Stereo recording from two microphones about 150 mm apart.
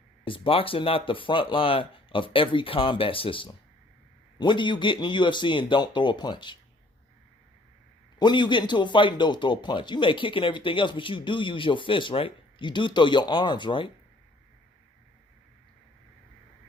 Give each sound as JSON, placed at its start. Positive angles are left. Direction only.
{"t": 0.3, "sound": "a man's voice", "side_deg": 35}
{"t": 8.2, "sound": "a man's voice", "side_deg": 30}